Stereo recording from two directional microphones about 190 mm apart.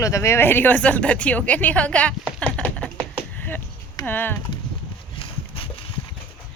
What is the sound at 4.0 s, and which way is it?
Speech, 10° left (ahead or behind).